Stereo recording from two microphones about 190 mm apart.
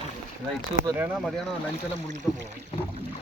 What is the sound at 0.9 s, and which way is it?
Speech, 5° right (ahead or behind).